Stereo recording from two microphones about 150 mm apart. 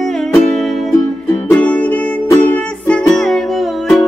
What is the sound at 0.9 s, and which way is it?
Music, 10° left (ahead or behind).